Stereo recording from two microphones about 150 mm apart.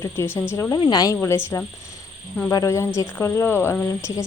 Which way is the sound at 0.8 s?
30° left (ahead or behind).